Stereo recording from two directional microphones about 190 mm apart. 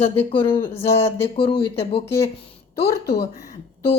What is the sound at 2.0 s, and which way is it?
Speech, 15° left (ahead or behind).